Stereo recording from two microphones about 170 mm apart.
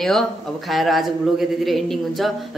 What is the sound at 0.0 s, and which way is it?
A man's voice, centre (ahead or behind).